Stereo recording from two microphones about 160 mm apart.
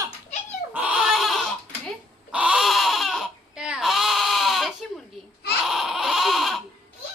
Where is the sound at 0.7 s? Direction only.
10° right (ahead or behind).